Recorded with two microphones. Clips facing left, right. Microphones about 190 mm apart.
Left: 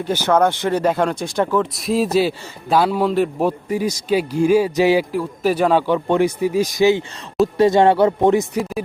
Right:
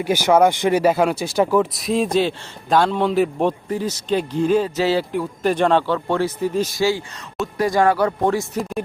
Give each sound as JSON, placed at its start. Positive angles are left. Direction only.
{"t": 0.0, "sound": "speech", "side_deg": -10}
{"t": 5.1, "sound": "a man's voice", "side_deg": 5}